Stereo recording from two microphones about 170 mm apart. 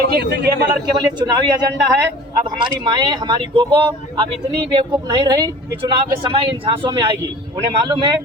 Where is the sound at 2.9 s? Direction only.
25° right (ahead or behind).